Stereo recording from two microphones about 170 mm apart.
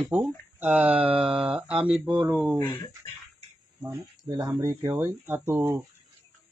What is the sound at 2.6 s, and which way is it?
Speech, 10° left (ahead or behind).